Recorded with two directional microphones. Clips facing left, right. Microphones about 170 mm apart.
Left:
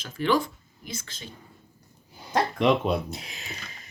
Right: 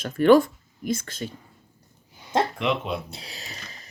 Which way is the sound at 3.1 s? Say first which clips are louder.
Left 2 dB; 35° right (ahead or behind).